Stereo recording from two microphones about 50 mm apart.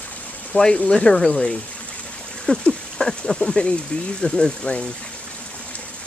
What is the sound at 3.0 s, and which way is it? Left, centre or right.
Speech, centre.